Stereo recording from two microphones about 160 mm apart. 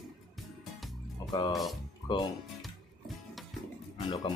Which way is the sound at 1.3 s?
25° left (ahead or behind).